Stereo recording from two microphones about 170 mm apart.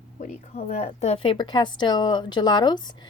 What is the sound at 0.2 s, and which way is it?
A woman's voice, 45° left (ahead or behind).